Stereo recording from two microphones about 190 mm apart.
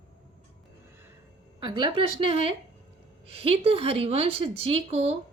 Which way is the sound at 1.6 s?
25° right (ahead or behind).